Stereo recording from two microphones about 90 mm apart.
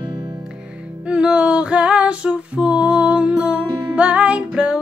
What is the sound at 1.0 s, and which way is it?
Music, 10° right (ahead or behind).